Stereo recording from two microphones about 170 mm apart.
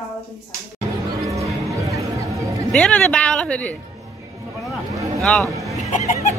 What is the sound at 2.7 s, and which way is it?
Music, 5° left (ahead or behind).